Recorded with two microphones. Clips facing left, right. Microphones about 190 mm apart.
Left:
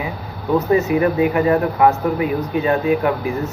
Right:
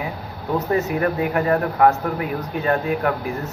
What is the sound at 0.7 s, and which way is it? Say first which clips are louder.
Speech: left 5 dB; 10° left (ahead or behind).